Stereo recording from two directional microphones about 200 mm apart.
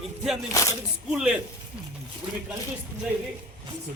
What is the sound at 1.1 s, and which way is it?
Speech, 5° right (ahead or behind).